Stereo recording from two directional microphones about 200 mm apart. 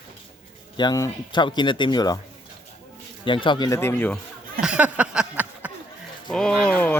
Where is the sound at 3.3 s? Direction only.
25° left (ahead or behind); by 4.2 s 10° left (ahead or behind).